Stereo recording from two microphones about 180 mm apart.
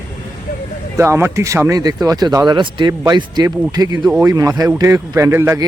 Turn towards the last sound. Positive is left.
turn(degrees=-15)  # may be behind; listen again after turning